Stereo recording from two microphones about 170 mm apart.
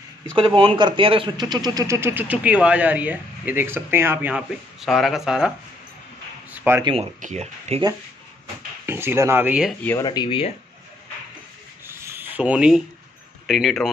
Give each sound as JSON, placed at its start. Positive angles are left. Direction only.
{"t": 0.6, "sound": "speech", "side_deg": -30}
{"t": 6.5, "sound": "a sound", "side_deg": -10}
{"t": 6.8, "sound": "speech", "side_deg": -30}
{"t": 7.2, "sound": "speech", "side_deg": -45}
{"t": 8.8, "sound": "speech", "side_deg": -15}
{"t": 9.8, "sound": "speech", "side_deg": 20}
{"t": 11.8, "sound": "rub", "side_deg": -15}
{"t": 13.5, "sound": "speech", "side_deg": 0}